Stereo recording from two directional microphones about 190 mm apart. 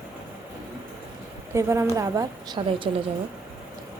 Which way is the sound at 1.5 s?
15° right (ahead or behind).